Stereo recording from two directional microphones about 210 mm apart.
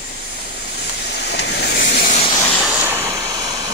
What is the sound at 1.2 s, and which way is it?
Vehicle, 55° left (ahead or behind).